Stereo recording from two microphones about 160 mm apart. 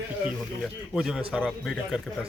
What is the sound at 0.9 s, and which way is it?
Speech, 5° right (ahead or behind).